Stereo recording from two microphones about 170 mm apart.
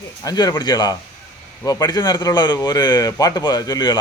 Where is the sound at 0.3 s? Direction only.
25° left (ahead or behind).